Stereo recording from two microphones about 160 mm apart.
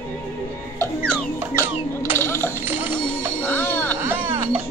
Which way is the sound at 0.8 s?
5° left (ahead or behind).